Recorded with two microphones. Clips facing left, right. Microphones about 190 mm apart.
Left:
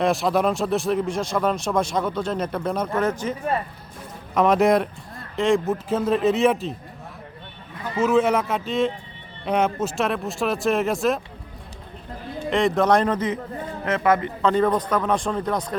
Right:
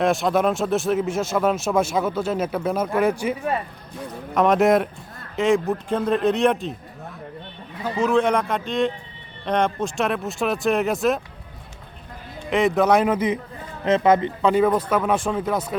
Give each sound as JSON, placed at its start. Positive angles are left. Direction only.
{"t": 0.0, "sound": "speech", "side_deg": 0}
{"t": 4.4, "sound": "speech", "side_deg": 0}
{"t": 7.9, "sound": "speech", "side_deg": 5}
{"t": 12.5, "sound": "speech", "side_deg": 0}
{"t": 14.4, "sound": "speech", "side_deg": -10}